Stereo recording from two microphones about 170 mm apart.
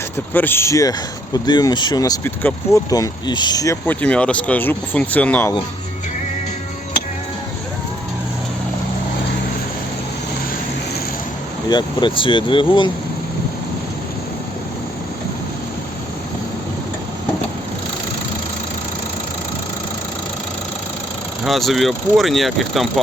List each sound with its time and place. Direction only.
0.3 s speech: 10° left (ahead or behind)
11.7 s speech: 25° left (ahead or behind)
21.4 s speech: centre (ahead or behind)